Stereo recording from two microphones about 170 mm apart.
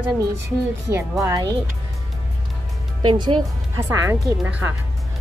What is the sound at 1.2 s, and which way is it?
Speech, 25° right (ahead or behind).